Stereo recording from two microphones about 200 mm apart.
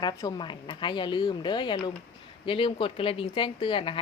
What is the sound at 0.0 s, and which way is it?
A woman's voice, 20° left (ahead or behind).